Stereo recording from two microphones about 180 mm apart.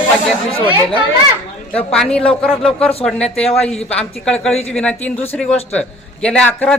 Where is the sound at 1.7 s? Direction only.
5° left (ahead or behind).